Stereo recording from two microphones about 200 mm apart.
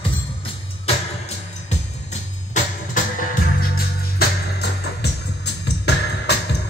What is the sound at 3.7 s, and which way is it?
Music, 50° left (ahead or behind).